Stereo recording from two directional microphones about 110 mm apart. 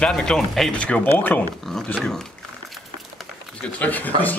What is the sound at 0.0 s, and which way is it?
Speech, 5° left (ahead or behind).